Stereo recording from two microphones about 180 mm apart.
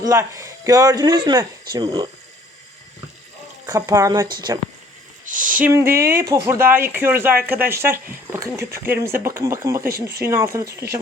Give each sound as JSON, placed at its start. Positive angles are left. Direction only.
{"t": 0.0, "sound": "speech", "side_deg": -15}
{"t": 3.7, "sound": "speech", "side_deg": -20}
{"t": 5.2, "sound": "a sound", "side_deg": -45}
{"t": 5.6, "sound": "speech", "side_deg": -15}